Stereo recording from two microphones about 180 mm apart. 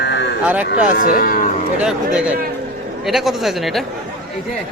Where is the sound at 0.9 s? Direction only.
50° left (ahead or behind).